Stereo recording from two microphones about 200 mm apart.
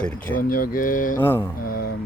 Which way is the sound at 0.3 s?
45° left (ahead or behind).